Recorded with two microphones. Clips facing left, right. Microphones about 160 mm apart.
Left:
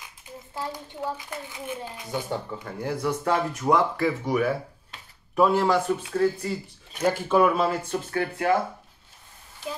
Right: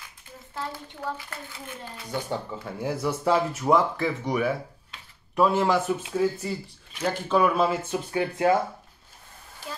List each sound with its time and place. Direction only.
0.6 s a child's voice: 15° left (ahead or behind)
2.2 s speech: 10° right (ahead or behind)
7.0 s speech: 5° left (ahead or behind)
8.1 s speech: 20° right (ahead or behind)
9.7 s a sound: 15° left (ahead or behind)